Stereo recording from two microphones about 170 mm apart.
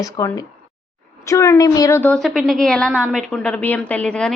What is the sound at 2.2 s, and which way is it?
A woman's voice, centre (ahead or behind).